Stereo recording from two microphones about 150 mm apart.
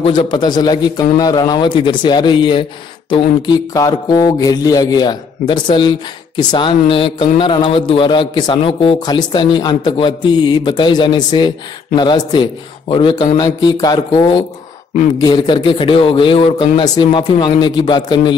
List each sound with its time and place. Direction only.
0.0 s a man's voice: 35° left (ahead or behind)
3.1 s mantra: 30° left (ahead or behind)
13.4 s a man's voice: 30° left (ahead or behind)
15.1 s mantra: 30° left (ahead or behind)